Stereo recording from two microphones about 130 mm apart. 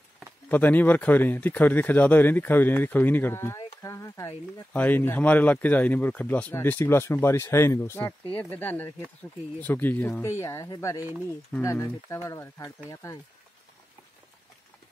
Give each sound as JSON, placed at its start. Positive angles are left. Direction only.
{"t": 0.5, "sound": "speech", "side_deg": 15}
{"t": 3.5, "sound": "a sound", "side_deg": 25}
{"t": 4.7, "sound": "speech", "side_deg": 15}